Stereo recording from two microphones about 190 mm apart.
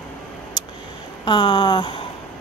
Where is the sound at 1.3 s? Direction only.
25° left (ahead or behind).